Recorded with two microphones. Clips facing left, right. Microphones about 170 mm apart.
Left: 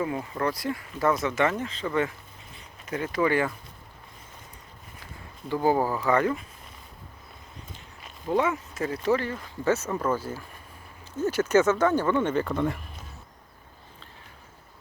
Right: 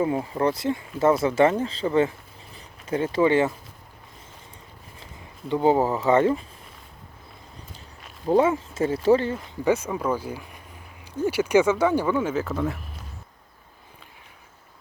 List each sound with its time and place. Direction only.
0.0 s speech: 25° right (ahead or behind)
5.5 s speech: 25° right (ahead or behind)
8.3 s speech: 30° right (ahead or behind)
9.6 s speech: 10° right (ahead or behind)